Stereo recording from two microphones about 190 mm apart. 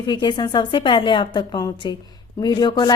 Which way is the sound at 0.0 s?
25° left (ahead or behind).